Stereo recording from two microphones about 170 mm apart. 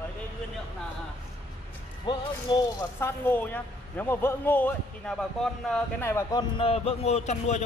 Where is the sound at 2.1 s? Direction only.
30° left (ahead or behind).